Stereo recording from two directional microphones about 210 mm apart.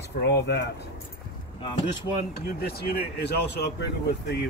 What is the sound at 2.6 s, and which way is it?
Speech, 45° left (ahead or behind).